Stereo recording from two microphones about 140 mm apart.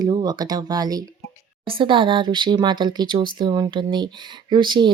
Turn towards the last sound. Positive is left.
turn(degrees=-35)  # may be behind; listen again after turning